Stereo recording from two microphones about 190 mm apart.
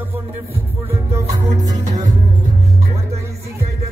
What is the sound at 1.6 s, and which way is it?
Music, 20° right (ahead or behind).